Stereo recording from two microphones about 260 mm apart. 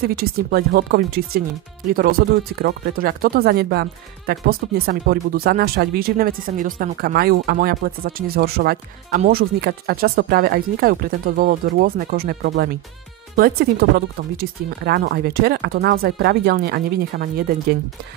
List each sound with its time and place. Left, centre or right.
0.0 s speech: right